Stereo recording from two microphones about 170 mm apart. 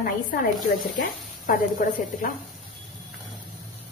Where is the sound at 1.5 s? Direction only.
55° left (ahead or behind).